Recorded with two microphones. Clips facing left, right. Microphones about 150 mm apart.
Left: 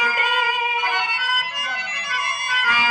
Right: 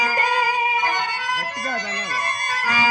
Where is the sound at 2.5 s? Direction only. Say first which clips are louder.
Right 1 dB; 40° right (ahead or behind).